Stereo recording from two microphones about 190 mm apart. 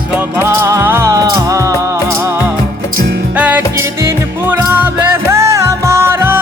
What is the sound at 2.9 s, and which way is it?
Music, 55° right (ahead or behind).